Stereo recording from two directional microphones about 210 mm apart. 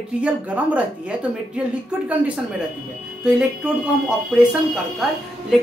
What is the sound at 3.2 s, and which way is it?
Speech, 5° right (ahead or behind).